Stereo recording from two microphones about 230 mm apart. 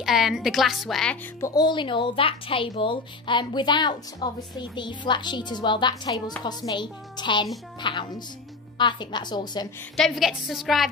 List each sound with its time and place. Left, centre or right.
0.0 s a woman's voice: centre
1.4 s speech: centre
9.9 s a woman's voice: centre